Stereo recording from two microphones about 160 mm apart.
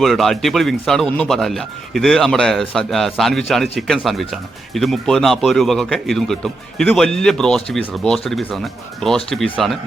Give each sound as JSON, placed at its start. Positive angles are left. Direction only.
{"t": 0.0, "sound": "speech", "side_deg": 0}